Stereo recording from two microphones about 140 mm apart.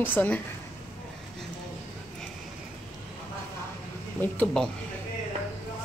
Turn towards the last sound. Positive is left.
turn(degrees=10)  # may be behind; listen again after turning